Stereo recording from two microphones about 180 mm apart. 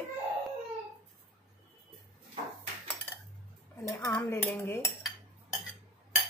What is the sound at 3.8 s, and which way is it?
Dishes, 15° left (ahead or behind).